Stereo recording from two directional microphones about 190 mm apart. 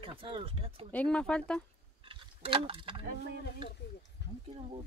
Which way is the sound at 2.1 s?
30° right (ahead or behind).